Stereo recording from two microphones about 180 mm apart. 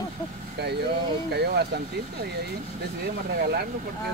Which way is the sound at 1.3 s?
65° right (ahead or behind).